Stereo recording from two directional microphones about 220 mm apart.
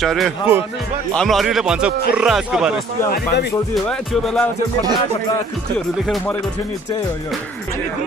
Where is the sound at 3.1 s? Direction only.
45° left (ahead or behind).